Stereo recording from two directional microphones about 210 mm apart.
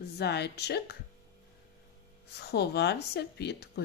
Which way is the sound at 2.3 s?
50° left (ahead or behind).